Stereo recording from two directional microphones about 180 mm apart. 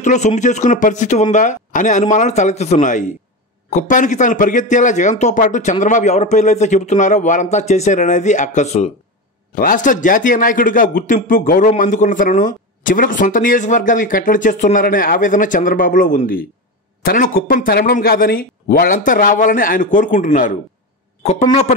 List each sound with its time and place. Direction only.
0.0 s a man's voice: 40° left (ahead or behind)
21.2 s a man's voice: 40° left (ahead or behind)